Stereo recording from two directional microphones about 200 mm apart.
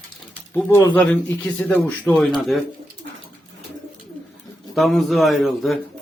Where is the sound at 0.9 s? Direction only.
10° left (ahead or behind).